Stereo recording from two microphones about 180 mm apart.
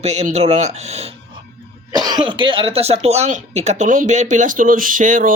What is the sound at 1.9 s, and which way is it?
Speech, 20° right (ahead or behind).